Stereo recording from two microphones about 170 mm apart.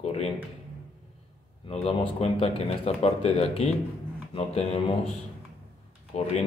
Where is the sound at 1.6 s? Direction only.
35° left (ahead or behind).